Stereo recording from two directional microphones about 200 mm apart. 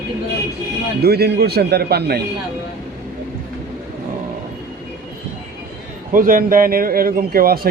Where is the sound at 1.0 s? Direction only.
50° right (ahead or behind).